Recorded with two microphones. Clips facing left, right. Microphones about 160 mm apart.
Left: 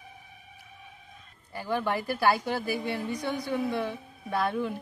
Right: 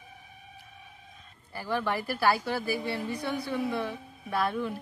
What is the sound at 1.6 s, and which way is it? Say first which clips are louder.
A woman's voice: left 1 dB; 20° left (ahead or behind).